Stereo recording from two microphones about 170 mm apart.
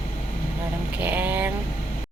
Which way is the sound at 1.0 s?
10° right (ahead or behind).